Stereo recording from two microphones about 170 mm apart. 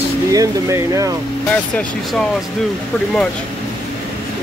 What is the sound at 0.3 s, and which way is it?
Speech, 20° right (ahead or behind).